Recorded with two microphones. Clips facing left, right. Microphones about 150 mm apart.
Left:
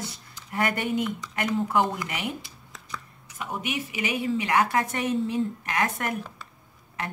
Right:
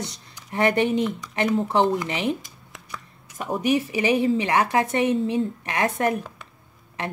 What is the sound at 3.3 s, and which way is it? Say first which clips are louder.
A woman's voice: right 9 dB; 40° right (ahead or behind).